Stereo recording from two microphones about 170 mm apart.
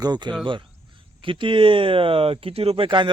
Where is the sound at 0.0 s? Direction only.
25° right (ahead or behind).